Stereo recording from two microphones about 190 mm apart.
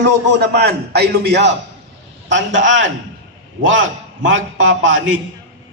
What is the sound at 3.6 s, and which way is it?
Speech, 85° right.